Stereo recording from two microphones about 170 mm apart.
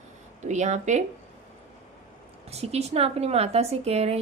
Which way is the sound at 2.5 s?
40° right (ahead or behind).